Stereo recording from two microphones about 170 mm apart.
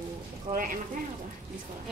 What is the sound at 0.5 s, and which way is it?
Speech, 55° right (ahead or behind).